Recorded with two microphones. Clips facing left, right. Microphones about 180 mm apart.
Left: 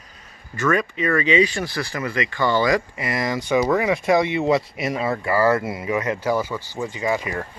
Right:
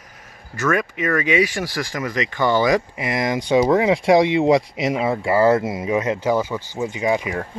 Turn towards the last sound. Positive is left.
turn(degrees=-15)  # may be behind; listen again after turning